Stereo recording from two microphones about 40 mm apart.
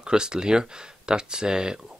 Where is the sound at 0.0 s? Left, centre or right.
Centre.